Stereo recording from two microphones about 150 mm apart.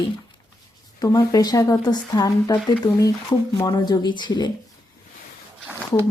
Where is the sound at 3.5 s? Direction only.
25° left (ahead or behind).